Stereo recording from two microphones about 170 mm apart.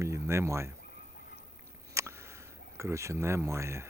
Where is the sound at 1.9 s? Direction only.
15° right (ahead or behind).